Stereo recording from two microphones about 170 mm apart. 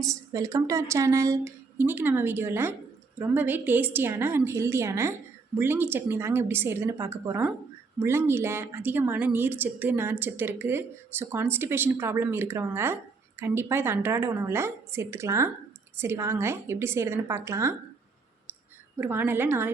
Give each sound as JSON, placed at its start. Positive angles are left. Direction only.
{"t": 0.0, "sound": "a woman's voice", "side_deg": -20}
{"t": 18.9, "sound": "a woman's voice", "side_deg": -10}